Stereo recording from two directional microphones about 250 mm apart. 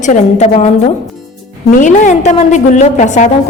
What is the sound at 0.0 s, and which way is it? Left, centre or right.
Speech, left.